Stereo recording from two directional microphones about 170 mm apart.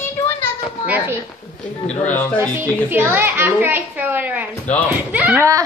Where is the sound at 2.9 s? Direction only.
15° right (ahead or behind).